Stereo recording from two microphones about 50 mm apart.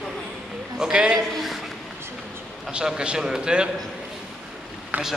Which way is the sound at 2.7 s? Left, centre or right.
Centre.